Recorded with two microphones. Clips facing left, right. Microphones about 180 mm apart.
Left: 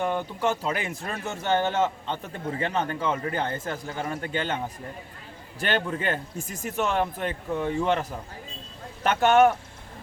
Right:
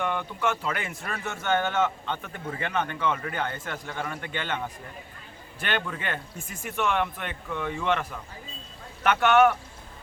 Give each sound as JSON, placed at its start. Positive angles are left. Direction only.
{"t": 0.0, "sound": "speech", "side_deg": 35}